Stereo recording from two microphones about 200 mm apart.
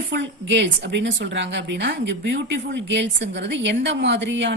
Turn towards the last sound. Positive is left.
turn(degrees=-60)  # may be behind; listen again after turning